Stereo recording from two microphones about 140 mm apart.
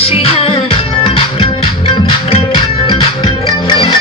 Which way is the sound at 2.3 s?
40° left (ahead or behind).